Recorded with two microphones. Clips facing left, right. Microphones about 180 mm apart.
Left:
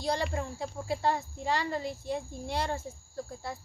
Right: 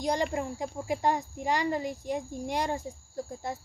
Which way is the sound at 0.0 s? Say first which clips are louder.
Right 3 dB; 15° right (ahead or behind).